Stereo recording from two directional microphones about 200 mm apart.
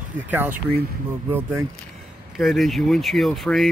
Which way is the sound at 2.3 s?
Centre (ahead or behind).